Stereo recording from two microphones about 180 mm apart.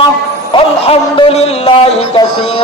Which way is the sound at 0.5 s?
30° left (ahead or behind).